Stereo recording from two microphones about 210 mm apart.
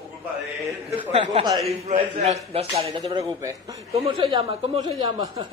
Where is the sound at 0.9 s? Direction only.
30° right (ahead or behind).